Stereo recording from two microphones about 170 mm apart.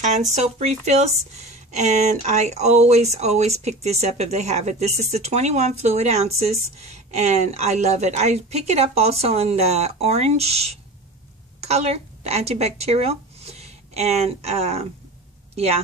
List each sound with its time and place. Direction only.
0.0 s a woman's voice: 45° right (ahead or behind)